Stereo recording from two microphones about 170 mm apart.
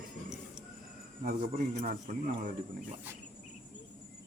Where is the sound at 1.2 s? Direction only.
45° right (ahead or behind).